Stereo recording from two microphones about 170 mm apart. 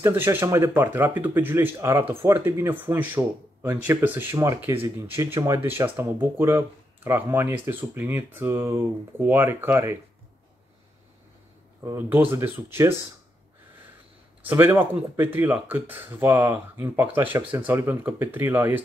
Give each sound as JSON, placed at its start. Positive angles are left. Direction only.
{"t": 0.0, "sound": "speech", "side_deg": -10}
{"t": 11.8, "sound": "speech", "side_deg": -15}
{"t": 14.4, "sound": "speech", "side_deg": -10}